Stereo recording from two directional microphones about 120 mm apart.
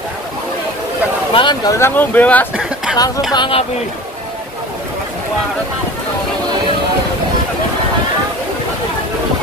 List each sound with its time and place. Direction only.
1.3 s speech: 40° left (ahead or behind)
1.7 s speech: 20° left (ahead or behind)
2.5 s a sound: 5° right (ahead or behind)
3.3 s speech: 45° left (ahead or behind)